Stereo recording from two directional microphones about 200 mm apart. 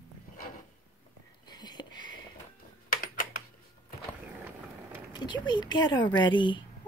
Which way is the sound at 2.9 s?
45° left (ahead or behind).